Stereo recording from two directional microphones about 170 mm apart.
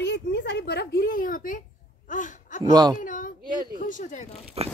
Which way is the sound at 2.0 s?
50° left (ahead or behind).